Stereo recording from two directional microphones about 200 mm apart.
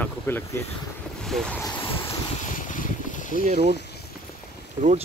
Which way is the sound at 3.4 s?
35° right (ahead or behind).